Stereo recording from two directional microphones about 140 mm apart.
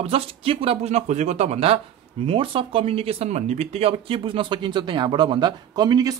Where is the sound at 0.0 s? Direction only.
45° right (ahead or behind).